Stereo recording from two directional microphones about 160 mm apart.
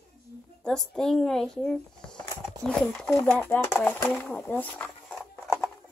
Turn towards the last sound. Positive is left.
turn(degrees=10)  # may be behind; listen again after turning